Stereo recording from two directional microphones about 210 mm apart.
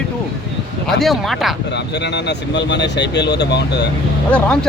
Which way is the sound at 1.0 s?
Centre (ahead or behind).